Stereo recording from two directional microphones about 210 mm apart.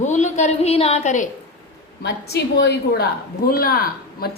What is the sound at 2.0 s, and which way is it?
A woman's voice, 55° left (ahead or behind).